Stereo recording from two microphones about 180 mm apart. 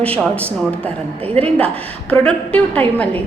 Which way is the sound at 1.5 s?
5° left (ahead or behind).